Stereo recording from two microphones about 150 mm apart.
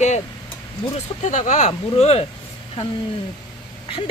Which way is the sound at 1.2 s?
55° left (ahead or behind).